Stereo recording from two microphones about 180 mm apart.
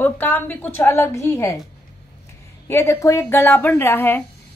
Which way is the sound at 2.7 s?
15° left (ahead or behind).